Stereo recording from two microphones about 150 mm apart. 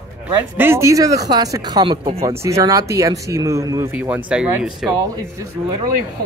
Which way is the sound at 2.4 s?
20° right (ahead or behind).